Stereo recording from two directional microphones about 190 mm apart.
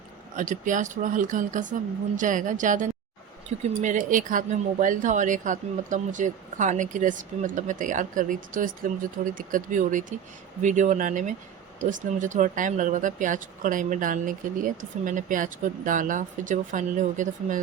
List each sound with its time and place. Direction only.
0.3 s speech: 40° right (ahead or behind)